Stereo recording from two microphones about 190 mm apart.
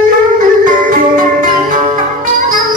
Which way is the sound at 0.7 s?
45° right (ahead or behind).